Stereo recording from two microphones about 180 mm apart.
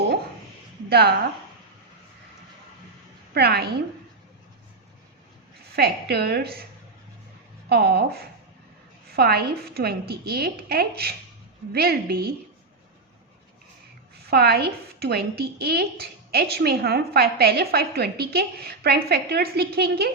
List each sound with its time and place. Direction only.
0.9 s speech: 60° right (ahead or behind)
3.3 s a woman's voice: 60° right (ahead or behind)
5.7 s a woman's voice: 60° right (ahead or behind)
7.7 s a woman's voice: 60° right (ahead or behind)
14.3 s a woman's voice: 60° right (ahead or behind)